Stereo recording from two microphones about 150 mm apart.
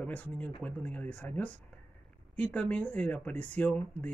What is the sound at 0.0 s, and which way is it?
Speech, 10° left (ahead or behind).